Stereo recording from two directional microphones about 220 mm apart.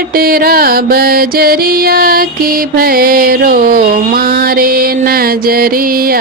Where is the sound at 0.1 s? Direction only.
40° right (ahead or behind).